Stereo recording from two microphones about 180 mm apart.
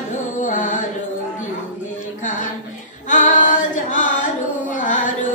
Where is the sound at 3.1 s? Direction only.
45° left (ahead or behind).